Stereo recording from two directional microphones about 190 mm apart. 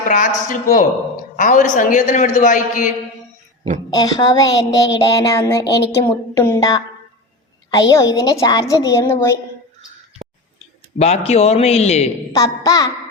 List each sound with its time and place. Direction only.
0.0 s speech: 45° left (ahead or behind)
3.8 s a woman's voice: 20° left (ahead or behind)
10.9 s a man's voice: 35° left (ahead or behind)
12.3 s a woman's voice: 20° left (ahead or behind)